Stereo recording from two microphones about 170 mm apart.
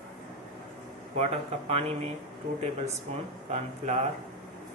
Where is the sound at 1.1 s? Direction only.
40° right (ahead or behind).